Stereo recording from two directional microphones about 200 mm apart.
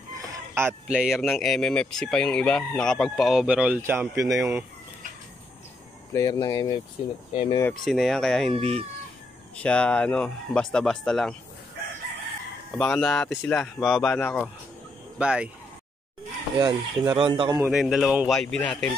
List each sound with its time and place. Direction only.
0.2 s speech: 15° right (ahead or behind)
6.1 s speech: 15° left (ahead or behind)
7.6 s speech: centre (ahead or behind)
8.5 s speech: 30° right (ahead or behind)
9.6 s speech: 5° left (ahead or behind)
12.7 s speech: 5° left (ahead or behind)
16.5 s speech: 20° right (ahead or behind)
17.6 s speech: centre (ahead or behind)